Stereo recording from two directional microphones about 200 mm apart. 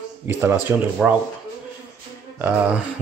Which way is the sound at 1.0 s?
Centre (ahead or behind).